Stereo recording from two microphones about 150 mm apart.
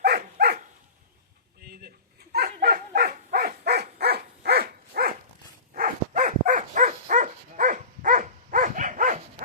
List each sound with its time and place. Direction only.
0.0 s dog: 90° right
2.3 s dog: 90° right
5.7 s dog: 60° right (ahead or behind)